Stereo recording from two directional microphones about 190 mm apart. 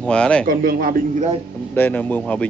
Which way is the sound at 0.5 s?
50° right (ahead or behind).